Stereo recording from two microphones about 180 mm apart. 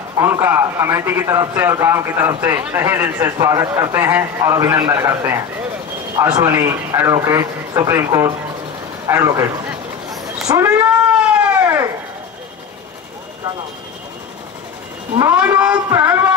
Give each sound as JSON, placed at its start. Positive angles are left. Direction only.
{"t": 0.2, "sound": "a man's voice", "side_deg": -10}
{"t": 6.4, "sound": "a man's voice", "side_deg": -10}
{"t": 10.5, "sound": "a man's voice", "side_deg": -10}
{"t": 11.3, "sound": "a sound", "side_deg": -10}
{"t": 15.1, "sound": "a man's voice", "side_deg": -10}